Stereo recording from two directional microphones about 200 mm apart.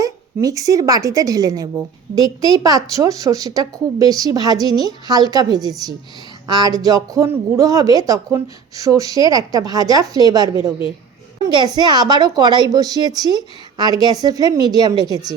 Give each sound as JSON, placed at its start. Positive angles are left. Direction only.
{"t": 0.0, "sound": "a woman's voice", "side_deg": -15}